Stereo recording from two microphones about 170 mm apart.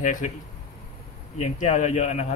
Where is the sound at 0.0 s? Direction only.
50° left (ahead or behind).